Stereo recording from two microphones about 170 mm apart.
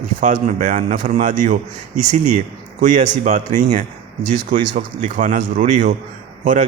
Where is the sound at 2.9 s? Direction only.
45° right (ahead or behind).